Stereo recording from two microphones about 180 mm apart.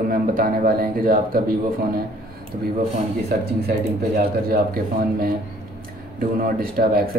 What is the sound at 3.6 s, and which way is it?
Speech, 55° right (ahead or behind).